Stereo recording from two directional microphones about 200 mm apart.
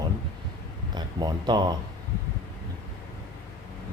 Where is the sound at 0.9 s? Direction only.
20° right (ahead or behind).